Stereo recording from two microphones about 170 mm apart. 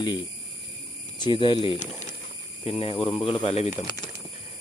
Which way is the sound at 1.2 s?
30° left (ahead or behind).